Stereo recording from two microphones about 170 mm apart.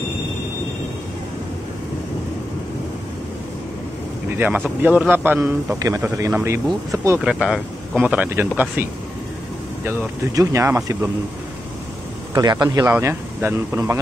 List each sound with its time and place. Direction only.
4.4 s a man's voice: 10° right (ahead or behind)
7.2 s speech: 5° right (ahead or behind)
9.8 s a man's voice: 20° right (ahead or behind)
12.4 s a man's voice: 25° right (ahead or behind)